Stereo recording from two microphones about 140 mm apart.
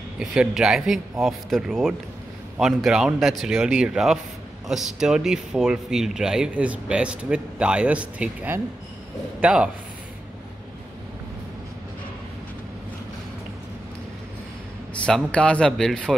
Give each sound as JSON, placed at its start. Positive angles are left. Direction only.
{"t": 0.2, "sound": "speech", "side_deg": -5}
{"t": 15.0, "sound": "speech", "side_deg": 5}